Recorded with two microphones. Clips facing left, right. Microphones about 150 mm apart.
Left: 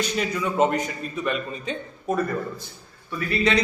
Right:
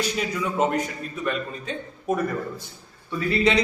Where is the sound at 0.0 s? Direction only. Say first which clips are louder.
Left 1 dB; centre (ahead or behind).